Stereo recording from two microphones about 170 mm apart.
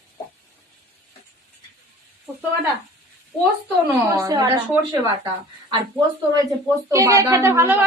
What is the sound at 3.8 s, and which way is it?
Speech, 20° right (ahead or behind).